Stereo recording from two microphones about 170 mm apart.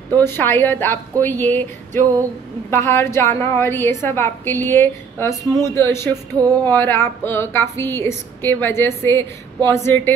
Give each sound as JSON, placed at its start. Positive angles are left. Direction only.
{"t": 0.1, "sound": "a woman's voice", "side_deg": 15}